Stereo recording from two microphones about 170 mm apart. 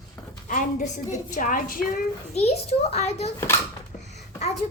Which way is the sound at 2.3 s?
35° left (ahead or behind).